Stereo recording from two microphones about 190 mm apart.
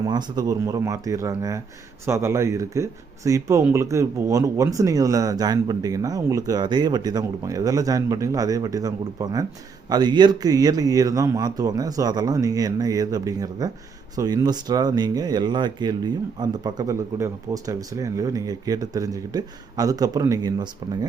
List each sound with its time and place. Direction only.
0.0 s speech: 20° right (ahead or behind)